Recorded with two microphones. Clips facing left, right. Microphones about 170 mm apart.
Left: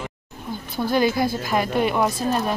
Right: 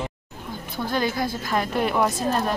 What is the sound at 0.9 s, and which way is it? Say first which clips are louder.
A woman's voice: left 5 dB; 10° left (ahead or behind).